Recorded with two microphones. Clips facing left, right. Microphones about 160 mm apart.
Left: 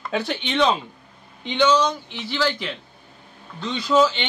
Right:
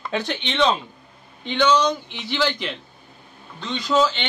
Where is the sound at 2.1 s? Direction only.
20° right (ahead or behind).